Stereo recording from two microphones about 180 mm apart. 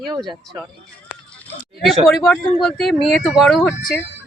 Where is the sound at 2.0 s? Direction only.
Centre (ahead or behind).